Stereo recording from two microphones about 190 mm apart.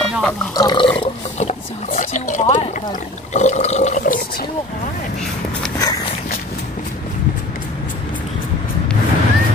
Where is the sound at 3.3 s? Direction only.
35° left (ahead or behind).